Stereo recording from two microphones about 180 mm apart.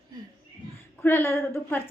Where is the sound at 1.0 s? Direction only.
10° left (ahead or behind).